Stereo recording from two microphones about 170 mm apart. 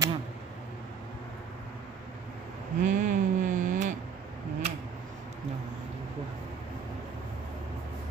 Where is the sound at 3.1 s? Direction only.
50° right (ahead or behind).